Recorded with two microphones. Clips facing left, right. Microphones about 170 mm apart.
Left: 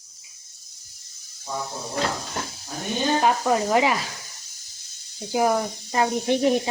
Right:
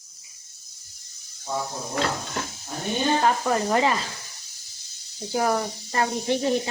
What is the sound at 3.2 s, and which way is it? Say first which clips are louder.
Speech: left 1 dB; 20° left (ahead or behind).